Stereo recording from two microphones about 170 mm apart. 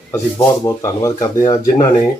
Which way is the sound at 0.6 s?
15° left (ahead or behind).